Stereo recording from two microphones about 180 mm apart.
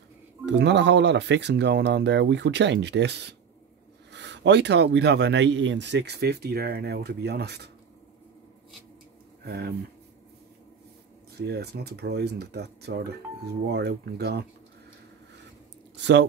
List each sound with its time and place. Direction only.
0.5 s a man's voice: 75° right (ahead or behind)
9.4 s speech: 60° right (ahead or behind)
11.3 s speech: 65° right (ahead or behind)